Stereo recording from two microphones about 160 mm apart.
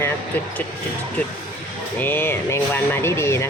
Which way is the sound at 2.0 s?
15° left (ahead or behind).